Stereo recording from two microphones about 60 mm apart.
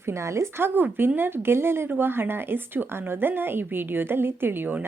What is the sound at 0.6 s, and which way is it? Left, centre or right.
Speech, right.